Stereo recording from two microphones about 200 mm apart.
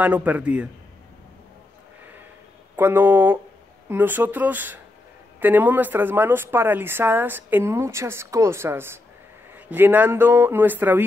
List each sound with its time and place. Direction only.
0.0 s speech: 10° right (ahead or behind)
2.7 s speech: 10° right (ahead or behind)